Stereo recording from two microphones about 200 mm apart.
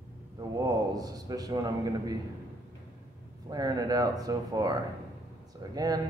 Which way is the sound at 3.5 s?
20° right (ahead or behind).